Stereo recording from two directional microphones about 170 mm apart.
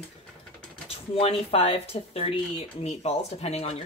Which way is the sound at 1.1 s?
35° left (ahead or behind).